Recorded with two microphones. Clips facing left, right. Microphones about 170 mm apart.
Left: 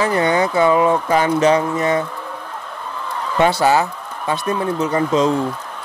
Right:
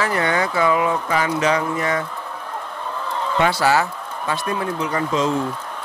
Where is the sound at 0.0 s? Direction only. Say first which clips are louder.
Left 4 dB; 20° left (ahead or behind).